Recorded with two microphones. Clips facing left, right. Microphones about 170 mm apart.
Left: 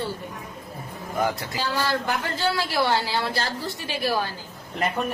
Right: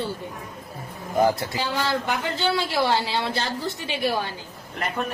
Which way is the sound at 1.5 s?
20° right (ahead or behind).